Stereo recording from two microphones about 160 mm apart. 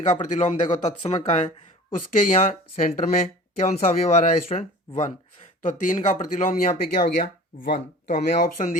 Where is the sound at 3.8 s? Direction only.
50° left (ahead or behind); by 8.5 s 70° left (ahead or behind).